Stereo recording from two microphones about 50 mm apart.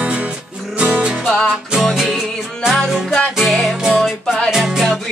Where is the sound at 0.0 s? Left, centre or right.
Right.